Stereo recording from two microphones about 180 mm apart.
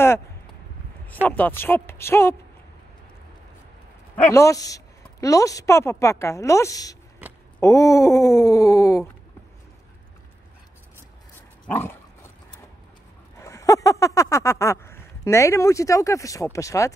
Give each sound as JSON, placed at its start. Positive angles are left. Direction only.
{"t": 1.2, "sound": "a woman's voice", "side_deg": 10}
{"t": 4.3, "sound": "a woman's voice", "side_deg": 15}
{"t": 11.6, "sound": "dog", "side_deg": 10}
{"t": 13.4, "sound": "a sound", "side_deg": 20}